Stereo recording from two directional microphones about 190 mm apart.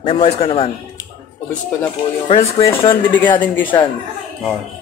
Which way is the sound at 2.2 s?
35° left (ahead or behind).